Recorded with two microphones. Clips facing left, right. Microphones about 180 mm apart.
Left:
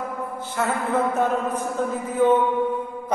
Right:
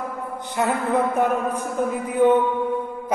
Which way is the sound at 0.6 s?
15° right (ahead or behind).